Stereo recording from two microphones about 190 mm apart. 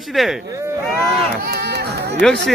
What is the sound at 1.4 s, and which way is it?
Music, 55° right (ahead or behind).